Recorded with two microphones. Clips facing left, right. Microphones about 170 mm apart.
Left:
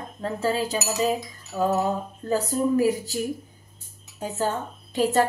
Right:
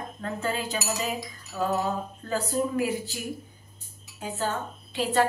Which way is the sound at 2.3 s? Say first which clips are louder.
Left 5 dB; 40° left (ahead or behind).